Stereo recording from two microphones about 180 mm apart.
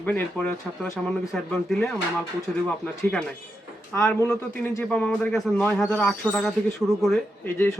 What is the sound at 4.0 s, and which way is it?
A man's voice, 15° left (ahead or behind).